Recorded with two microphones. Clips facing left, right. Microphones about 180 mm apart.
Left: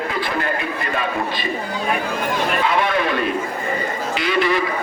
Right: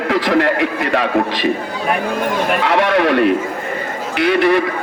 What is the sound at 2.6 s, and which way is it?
A man's voice, 75° right (ahead or behind).